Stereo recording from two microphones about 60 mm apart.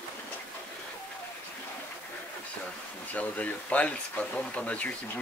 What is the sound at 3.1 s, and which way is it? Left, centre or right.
Speech, left.